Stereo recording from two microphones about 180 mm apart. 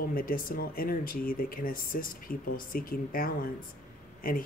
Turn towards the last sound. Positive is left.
turn(degrees=50)  # may be behind; listen again after turning